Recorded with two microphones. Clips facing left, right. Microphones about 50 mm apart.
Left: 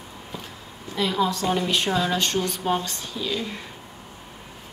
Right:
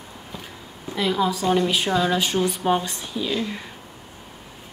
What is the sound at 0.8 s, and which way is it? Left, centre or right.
A woman's voice, centre.